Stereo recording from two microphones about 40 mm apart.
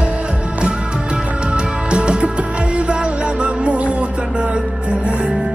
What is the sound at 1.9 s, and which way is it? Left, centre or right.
Music, right.